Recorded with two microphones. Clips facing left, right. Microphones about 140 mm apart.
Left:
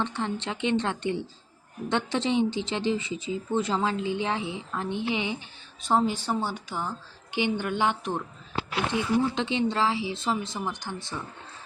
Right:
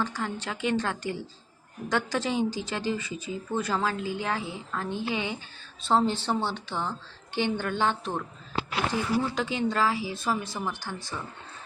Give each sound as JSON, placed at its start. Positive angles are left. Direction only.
{"t": 0.0, "sound": "a woman's voice", "side_deg": 25}